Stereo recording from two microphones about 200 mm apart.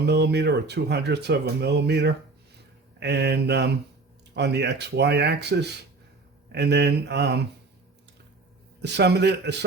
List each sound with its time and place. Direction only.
0.0 s speech: 55° right (ahead or behind)
8.8 s speech: 55° right (ahead or behind)